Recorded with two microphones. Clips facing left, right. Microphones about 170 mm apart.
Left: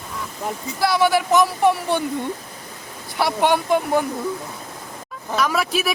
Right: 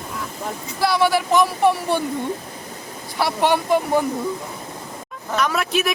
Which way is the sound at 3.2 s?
Centre (ahead or behind).